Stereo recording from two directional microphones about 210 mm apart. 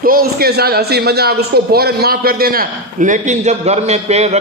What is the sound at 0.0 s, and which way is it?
A man's voice, 45° right (ahead or behind).